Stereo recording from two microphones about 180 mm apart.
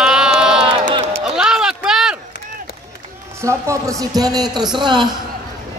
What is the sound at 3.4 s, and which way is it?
A man's voice, 15° right (ahead or behind).